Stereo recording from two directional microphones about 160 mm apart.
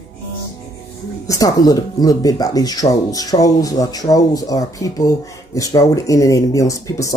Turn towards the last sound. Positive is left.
turn(degrees=20)  # may be behind; listen again after turning